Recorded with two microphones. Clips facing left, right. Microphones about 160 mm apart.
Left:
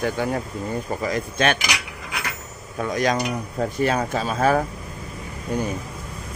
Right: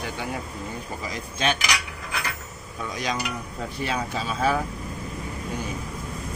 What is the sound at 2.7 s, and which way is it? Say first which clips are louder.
Speech: left 7 dB; 50° left (ahead or behind).